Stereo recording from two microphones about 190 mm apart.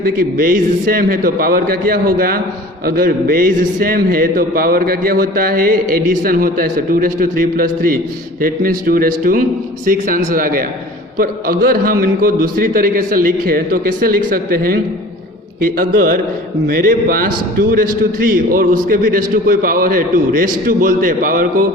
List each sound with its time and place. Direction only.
0.0 s a man's voice: 50° right (ahead or behind)